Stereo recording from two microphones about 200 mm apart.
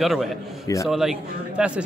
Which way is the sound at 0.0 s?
Centre (ahead or behind).